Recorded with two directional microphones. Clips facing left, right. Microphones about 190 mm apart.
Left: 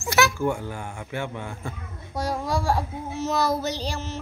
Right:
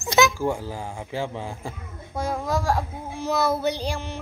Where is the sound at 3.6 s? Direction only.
55° right (ahead or behind).